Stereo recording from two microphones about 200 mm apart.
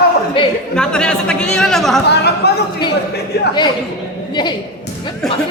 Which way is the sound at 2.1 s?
55° left (ahead or behind).